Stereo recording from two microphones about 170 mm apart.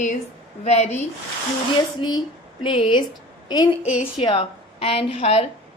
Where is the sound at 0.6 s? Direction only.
40° left (ahead or behind).